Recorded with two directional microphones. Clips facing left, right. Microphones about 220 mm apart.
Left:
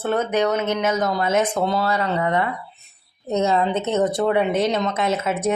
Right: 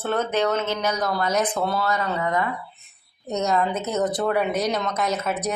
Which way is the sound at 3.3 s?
30° left (ahead or behind).